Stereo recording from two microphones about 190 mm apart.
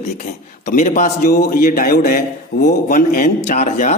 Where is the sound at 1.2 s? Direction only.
55° left (ahead or behind).